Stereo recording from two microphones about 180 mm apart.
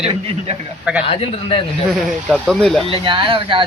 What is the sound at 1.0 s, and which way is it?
Speech, 30° left (ahead or behind).